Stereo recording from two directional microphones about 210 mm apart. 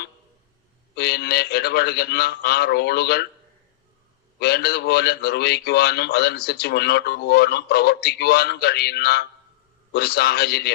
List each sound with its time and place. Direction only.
0.9 s a man's voice: 50° left (ahead or behind)
4.4 s a man's voice: 50° left (ahead or behind)